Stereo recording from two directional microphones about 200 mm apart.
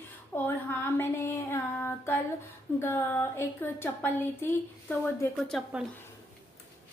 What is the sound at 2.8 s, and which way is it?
A woman's voice, 10° left (ahead or behind).